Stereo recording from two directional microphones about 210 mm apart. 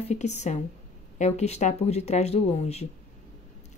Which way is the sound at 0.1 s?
35° left (ahead or behind).